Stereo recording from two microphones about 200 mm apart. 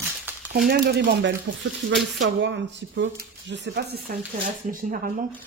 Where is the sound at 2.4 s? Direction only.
60° right (ahead or behind).